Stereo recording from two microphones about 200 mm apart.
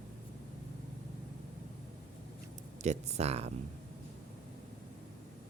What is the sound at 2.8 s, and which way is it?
Speech, 30° right (ahead or behind).